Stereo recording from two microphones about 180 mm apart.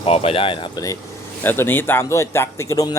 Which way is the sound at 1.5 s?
10° left (ahead or behind).